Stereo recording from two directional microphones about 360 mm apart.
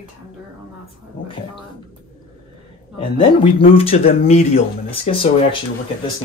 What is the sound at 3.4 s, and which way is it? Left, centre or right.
Speech, centre.